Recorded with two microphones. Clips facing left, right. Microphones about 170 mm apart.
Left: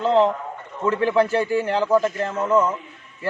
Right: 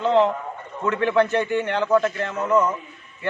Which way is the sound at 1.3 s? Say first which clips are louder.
Left 1 dB; 35° left (ahead or behind).